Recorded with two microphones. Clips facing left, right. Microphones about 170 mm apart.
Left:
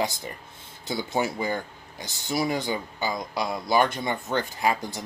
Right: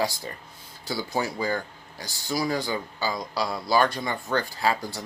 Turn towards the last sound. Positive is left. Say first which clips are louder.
# even
turn(degrees=20)  # may be behind; listen again after turning